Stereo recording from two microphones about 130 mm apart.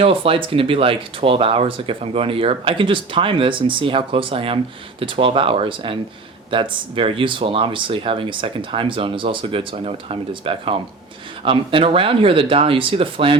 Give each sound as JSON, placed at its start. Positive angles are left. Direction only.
{"t": 0.0, "sound": "speech", "side_deg": -45}